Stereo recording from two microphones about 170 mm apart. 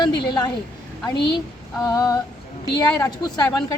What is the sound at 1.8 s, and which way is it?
Speech, 20° left (ahead or behind).